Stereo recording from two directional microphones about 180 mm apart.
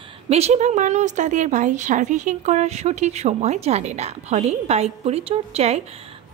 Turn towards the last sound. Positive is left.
turn(degrees=-35)  # may be behind; listen again after turning